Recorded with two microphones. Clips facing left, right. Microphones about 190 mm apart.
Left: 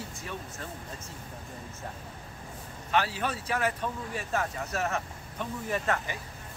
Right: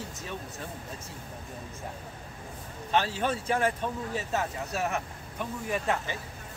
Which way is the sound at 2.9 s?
25° right (ahead or behind).